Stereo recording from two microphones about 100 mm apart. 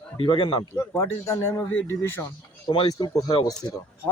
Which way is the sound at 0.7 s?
20° left (ahead or behind).